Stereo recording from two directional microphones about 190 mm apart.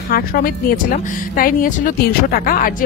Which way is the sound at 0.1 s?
50° left (ahead or behind).